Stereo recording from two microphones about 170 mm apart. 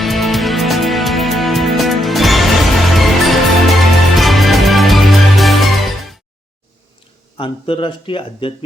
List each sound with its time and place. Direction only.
0.0 s music: centre (ahead or behind)
7.3 s speech: 30° left (ahead or behind)